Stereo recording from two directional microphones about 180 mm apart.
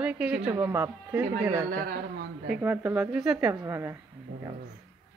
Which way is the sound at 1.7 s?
55° right (ahead or behind).